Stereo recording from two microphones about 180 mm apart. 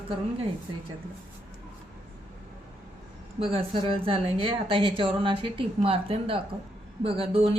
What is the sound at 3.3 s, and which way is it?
A woman's voice, 30° right (ahead or behind).